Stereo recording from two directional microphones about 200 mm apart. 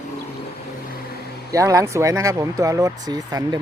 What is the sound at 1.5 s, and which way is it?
Speech, 15° right (ahead or behind).